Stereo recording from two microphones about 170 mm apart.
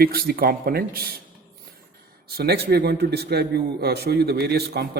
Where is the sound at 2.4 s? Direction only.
70° right (ahead or behind).